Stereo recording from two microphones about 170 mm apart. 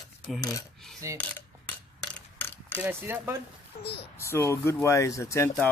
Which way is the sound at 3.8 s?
75° left (ahead or behind).